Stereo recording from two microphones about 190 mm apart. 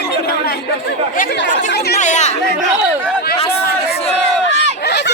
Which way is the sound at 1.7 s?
60° left (ahead or behind).